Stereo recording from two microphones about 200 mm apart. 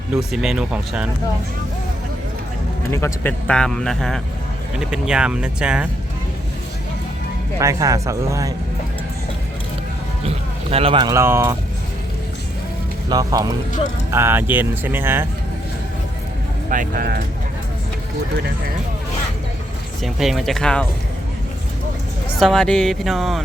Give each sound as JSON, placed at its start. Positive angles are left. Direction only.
{"t": 0.2, "sound": "speech", "side_deg": 0}
{"t": 2.9, "sound": "speech", "side_deg": 10}
{"t": 7.6, "sound": "speech", "side_deg": -15}
{"t": 10.2, "sound": "speech", "side_deg": -30}
{"t": 13.1, "sound": "speech", "side_deg": -20}
{"t": 16.6, "sound": "speech", "side_deg": -45}
{"t": 20.0, "sound": "speech", "side_deg": 0}
{"t": 22.4, "sound": "speech", "side_deg": 0}